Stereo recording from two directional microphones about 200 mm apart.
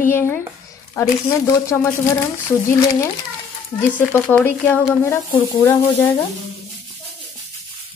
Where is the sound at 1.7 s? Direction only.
15° left (ahead or behind).